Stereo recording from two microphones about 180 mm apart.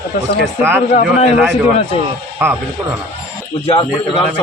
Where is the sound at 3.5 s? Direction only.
30° left (ahead or behind).